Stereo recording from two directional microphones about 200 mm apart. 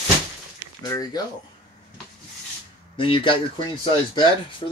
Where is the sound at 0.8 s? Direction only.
15° left (ahead or behind).